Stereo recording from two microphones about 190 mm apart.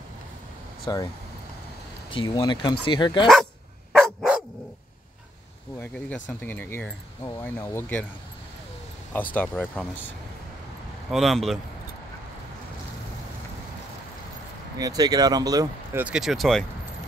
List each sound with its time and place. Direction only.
0.9 s speech: 20° left (ahead or behind)
2.0 s speech: 25° left (ahead or behind)
3.9 s dog: centre (ahead or behind)
5.8 s vehicle: 10° left (ahead or behind)
6.4 s speech: 10° left (ahead or behind)
9.3 s speech: 10° left (ahead or behind)
11.1 s speech: centre (ahead or behind)
14.8 s speech: 20° right (ahead or behind)
16.0 s speech: 5° right (ahead or behind)